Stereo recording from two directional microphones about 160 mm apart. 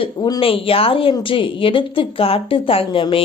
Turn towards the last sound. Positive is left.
turn(degrees=35)  # may be behind; listen again after turning